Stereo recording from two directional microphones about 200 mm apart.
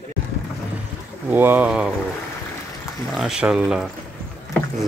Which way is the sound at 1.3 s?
10° right (ahead or behind).